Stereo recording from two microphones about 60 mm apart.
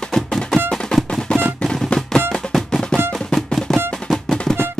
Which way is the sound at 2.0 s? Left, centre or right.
Centre.